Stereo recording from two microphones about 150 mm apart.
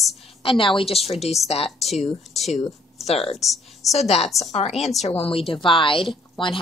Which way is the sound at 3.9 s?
45° left (ahead or behind).